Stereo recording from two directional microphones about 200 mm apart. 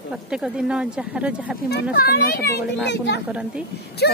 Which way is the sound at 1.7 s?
50° left (ahead or behind).